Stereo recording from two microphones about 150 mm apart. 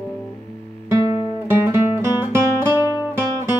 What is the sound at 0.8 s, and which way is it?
Music, 20° right (ahead or behind).